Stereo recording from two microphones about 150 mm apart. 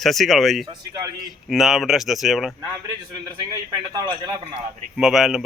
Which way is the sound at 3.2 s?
25° right (ahead or behind).